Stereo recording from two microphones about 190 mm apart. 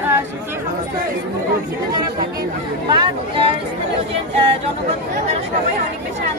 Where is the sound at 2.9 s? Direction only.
25° right (ahead or behind).